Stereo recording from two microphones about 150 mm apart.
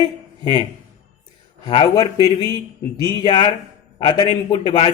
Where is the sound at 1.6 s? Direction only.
30° left (ahead or behind).